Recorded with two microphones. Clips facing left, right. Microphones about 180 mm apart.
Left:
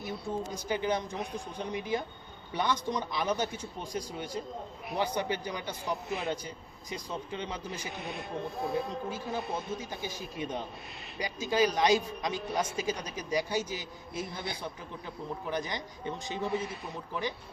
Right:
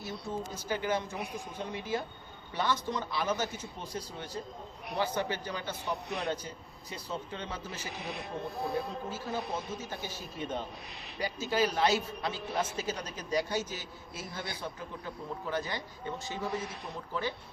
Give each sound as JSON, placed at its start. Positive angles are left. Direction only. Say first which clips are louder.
{"t": 0.5, "sound": "a man's voice", "louder": "left 1 dB", "side_deg": 15}
{"t": 5.8, "sound": "a man's voice", "louder": "left 2 dB", "side_deg": 0}
{"t": 7.9, "sound": "a man's voice", "louder": "right 2 dB", "side_deg": 0}
{"t": 8.7, "sound": "a man's voice", "louder": "left 2 dB", "side_deg": 15}
{"t": 9.3, "sound": "a man's voice", "louder": "even", "side_deg": 0}
{"t": 9.7, "sound": "a man's voice", "louder": "left 2 dB", "side_deg": 15}
{"t": 12.5, "sound": "a man's voice", "louder": "left 1 dB", "side_deg": -5}
{"t": 12.7, "sound": "a man's voice", "louder": "left 3 dB", "side_deg": 10}
{"t": 16.4, "sound": "a man's voice", "louder": "left 4 dB", "side_deg": 0}